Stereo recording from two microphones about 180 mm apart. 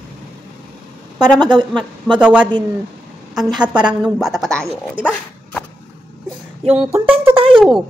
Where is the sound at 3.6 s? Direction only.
5° right (ahead or behind).